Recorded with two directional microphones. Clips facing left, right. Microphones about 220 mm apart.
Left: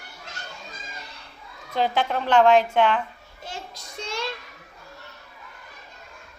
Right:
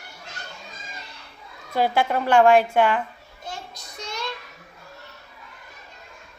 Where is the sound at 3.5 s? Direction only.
90° left.